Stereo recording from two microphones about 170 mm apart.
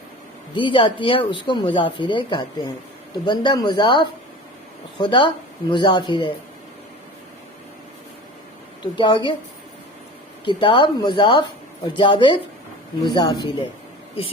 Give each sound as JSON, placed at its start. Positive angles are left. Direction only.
{"t": 0.5, "sound": "speech", "side_deg": 30}
{"t": 8.8, "sound": "speech", "side_deg": 25}
{"t": 10.4, "sound": "speech", "side_deg": 30}